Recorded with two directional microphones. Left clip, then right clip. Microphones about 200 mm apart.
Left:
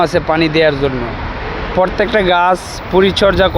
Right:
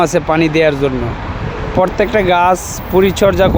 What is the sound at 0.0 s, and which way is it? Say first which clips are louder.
Speech: even; 20° right (ahead or behind).